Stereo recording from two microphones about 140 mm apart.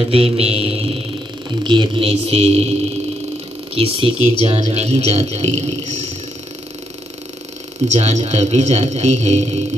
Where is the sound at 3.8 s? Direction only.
40° right (ahead or behind).